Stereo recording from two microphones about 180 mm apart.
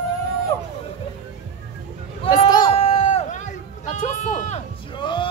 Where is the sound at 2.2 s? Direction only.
25° left (ahead or behind); by 4.6 s 40° left (ahead or behind).